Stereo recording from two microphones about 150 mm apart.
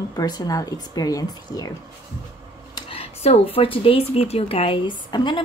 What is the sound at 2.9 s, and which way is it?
Speech, 40° left (ahead or behind).